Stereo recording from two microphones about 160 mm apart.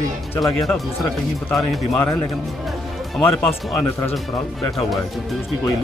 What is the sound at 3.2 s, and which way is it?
Speech, 10° left (ahead or behind).